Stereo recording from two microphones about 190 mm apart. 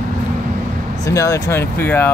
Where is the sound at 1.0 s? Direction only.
15° left (ahead or behind).